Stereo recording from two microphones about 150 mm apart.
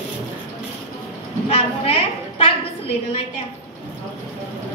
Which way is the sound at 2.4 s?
45° left (ahead or behind).